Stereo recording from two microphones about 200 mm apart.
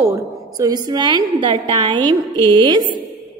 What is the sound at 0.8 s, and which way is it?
A woman's voice, 20° right (ahead or behind).